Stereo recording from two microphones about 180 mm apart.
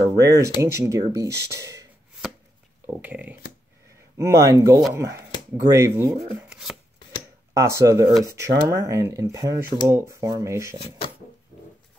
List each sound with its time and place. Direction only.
0.2 s speech: 15° right (ahead or behind)
3.0 s speech: 10° right (ahead or behind)
6.5 s chopping: 5° right (ahead or behind)
7.5 s speech: 15° right (ahead or behind)